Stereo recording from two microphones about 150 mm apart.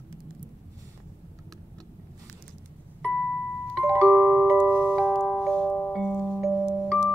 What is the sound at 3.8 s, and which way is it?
Music, 10° right (ahead or behind).